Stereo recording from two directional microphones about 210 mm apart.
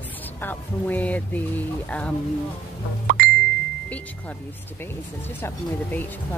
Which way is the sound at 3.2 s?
45° right (ahead or behind).